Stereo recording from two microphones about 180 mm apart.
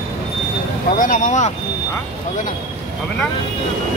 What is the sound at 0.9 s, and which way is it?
Speech, 45° left (ahead or behind).